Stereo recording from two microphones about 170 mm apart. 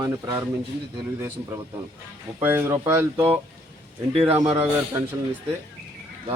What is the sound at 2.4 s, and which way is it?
Speech, 15° right (ahead or behind).